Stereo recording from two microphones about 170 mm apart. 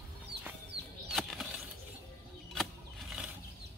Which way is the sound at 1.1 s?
Centre (ahead or behind).